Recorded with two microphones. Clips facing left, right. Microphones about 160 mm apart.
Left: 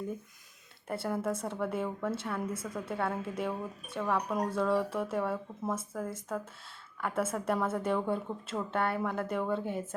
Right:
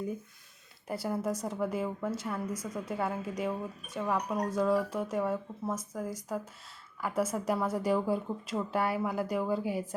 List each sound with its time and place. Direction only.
1.0 s speech: centre (ahead or behind)
2.5 s a woman's voice: 25° left (ahead or behind)
2.9 s speech: centre (ahead or behind)